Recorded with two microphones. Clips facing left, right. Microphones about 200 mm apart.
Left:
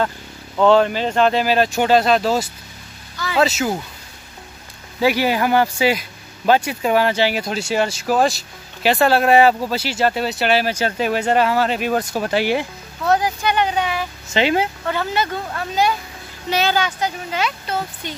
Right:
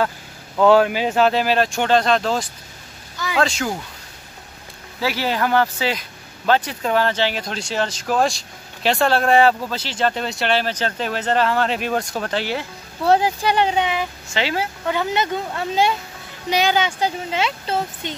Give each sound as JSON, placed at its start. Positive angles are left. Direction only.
{"t": 0.6, "sound": "speech", "side_deg": -5}
{"t": 5.0, "sound": "speech", "side_deg": 15}
{"t": 13.0, "sound": "speech", "side_deg": -30}
{"t": 14.3, "sound": "speech", "side_deg": 20}
{"t": 14.9, "sound": "speech", "side_deg": -15}
{"t": 16.4, "sound": "speech", "side_deg": -15}